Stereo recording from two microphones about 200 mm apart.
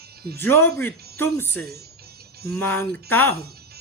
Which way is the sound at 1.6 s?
50° right (ahead or behind).